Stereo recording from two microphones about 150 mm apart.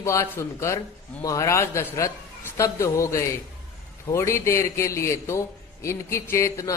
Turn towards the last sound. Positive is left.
turn(degrees=20)  # may be behind; listen again after turning